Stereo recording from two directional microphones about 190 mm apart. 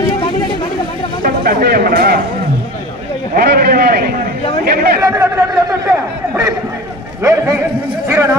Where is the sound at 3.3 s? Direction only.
55° right (ahead or behind).